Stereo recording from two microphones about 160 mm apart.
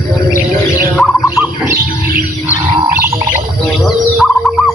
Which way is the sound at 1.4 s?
15° right (ahead or behind).